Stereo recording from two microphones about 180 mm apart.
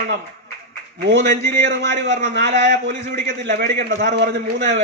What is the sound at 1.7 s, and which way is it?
A man's voice, 75° right (ahead or behind).